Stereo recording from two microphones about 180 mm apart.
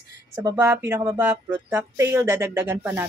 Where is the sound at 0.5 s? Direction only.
10° right (ahead or behind).